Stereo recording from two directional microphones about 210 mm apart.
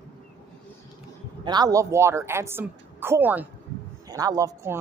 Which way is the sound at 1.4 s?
20° right (ahead or behind).